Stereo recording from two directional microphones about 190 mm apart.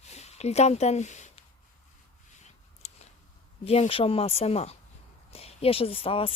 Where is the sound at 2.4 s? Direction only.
35° left (ahead or behind).